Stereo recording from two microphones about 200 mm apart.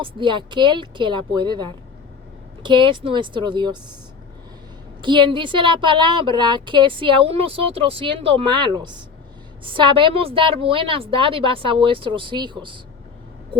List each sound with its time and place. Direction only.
0.0 s a woman's voice: 25° right (ahead or behind)
5.0 s a woman's voice: 25° right (ahead or behind)